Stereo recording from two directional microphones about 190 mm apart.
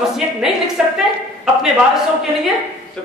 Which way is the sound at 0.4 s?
5° right (ahead or behind).